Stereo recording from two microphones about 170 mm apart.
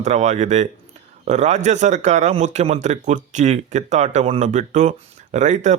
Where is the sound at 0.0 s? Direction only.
45° right (ahead or behind).